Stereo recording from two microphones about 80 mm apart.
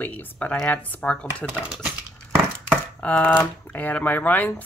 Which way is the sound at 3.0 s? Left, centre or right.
Centre.